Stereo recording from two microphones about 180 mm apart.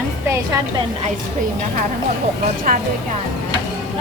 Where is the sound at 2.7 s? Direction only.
50° right (ahead or behind).